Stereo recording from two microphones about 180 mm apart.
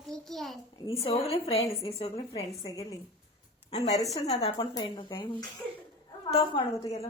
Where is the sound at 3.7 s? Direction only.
35° left (ahead or behind).